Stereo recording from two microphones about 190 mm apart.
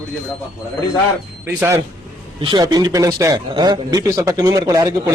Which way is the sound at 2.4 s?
25° right (ahead or behind).